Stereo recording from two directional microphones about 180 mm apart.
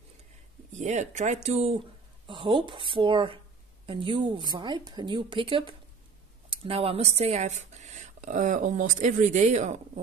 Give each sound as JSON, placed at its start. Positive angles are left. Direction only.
{"t": 0.7, "sound": "a woman's voice", "side_deg": -40}